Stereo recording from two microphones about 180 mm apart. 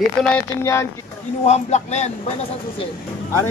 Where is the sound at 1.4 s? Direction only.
40° left (ahead or behind).